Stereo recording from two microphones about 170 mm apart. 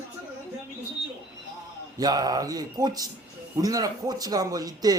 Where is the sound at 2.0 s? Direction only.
25° right (ahead or behind).